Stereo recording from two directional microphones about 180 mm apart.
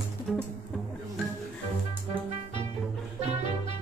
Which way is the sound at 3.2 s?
35° right (ahead or behind).